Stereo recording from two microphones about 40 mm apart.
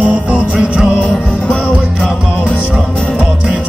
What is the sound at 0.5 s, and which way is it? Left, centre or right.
Music, centre.